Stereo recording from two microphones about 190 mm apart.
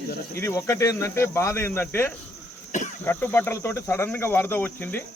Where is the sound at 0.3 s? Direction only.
15° left (ahead or behind).